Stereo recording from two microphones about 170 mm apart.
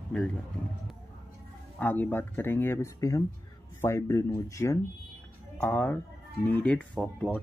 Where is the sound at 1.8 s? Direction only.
10° left (ahead or behind).